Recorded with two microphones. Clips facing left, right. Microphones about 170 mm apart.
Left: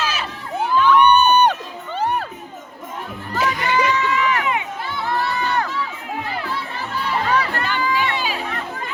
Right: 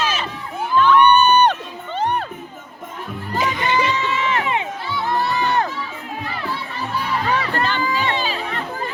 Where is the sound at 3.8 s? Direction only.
25° right (ahead or behind).